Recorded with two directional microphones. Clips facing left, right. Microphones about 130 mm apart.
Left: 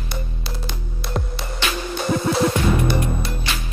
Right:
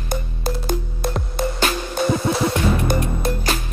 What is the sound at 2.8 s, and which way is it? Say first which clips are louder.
Music: right 1 dB; 45° right (ahead or behind).